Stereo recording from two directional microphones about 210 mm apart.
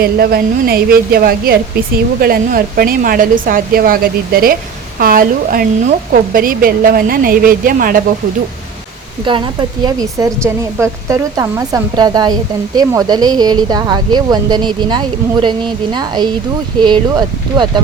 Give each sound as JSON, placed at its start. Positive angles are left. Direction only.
{"t": 0.0, "sound": "a woman's voice", "side_deg": -45}
{"t": 9.2, "sound": "a woman's voice", "side_deg": -20}